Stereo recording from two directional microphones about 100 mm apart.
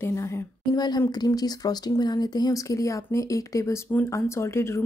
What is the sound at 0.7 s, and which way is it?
Speech, 45° left (ahead or behind).